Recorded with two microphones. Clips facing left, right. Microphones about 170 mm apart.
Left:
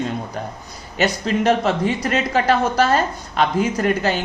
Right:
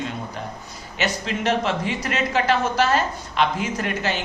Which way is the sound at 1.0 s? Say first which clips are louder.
Left 6 dB; 40° left (ahead or behind).